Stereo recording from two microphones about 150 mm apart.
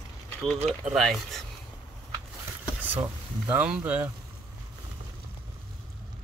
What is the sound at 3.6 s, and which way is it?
Speech, 10° right (ahead or behind).